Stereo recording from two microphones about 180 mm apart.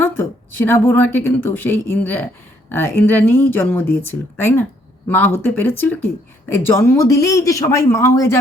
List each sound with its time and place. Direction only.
0.0 s a woman's voice: 10° left (ahead or behind)